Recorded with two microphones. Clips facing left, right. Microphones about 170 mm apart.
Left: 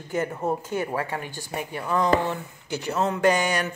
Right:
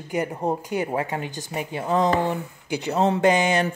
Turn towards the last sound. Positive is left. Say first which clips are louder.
# right 3 dB
turn(degrees=-25)  # may be behind; listen again after turning